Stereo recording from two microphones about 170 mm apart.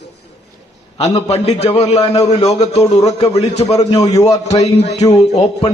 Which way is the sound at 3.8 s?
20° left (ahead or behind).